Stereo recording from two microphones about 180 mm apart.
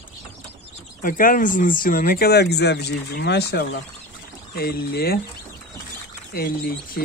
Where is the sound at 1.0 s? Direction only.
50° left (ahead or behind).